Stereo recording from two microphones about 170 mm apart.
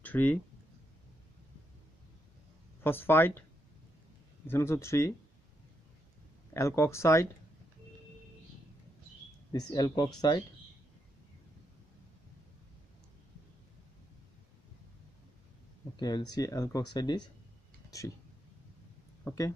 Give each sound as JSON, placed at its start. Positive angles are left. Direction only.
{"t": 0.0, "sound": "speech", "side_deg": 10}
{"t": 2.8, "sound": "speech", "side_deg": 10}
{"t": 4.5, "sound": "speech", "side_deg": 15}
{"t": 6.5, "sound": "speech", "side_deg": 15}
{"t": 9.5, "sound": "speech", "side_deg": 25}
{"t": 16.0, "sound": "speech", "side_deg": 25}
{"t": 19.2, "sound": "speech", "side_deg": 20}